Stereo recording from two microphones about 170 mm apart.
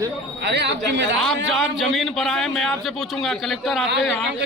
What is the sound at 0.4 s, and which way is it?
Speech, 90° right.